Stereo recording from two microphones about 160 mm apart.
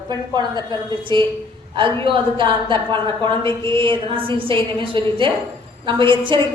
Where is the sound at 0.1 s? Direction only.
25° right (ahead or behind).